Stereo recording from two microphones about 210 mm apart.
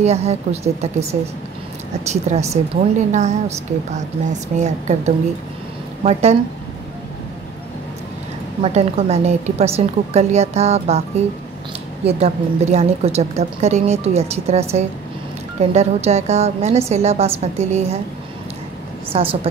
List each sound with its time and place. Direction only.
0.0 s a woman's voice: 30° right (ahead or behind)
2.3 s a woman's voice: 30° right (ahead or behind)
8.6 s a woman's voice: 30° right (ahead or behind)
19.1 s a woman's voice: 25° right (ahead or behind)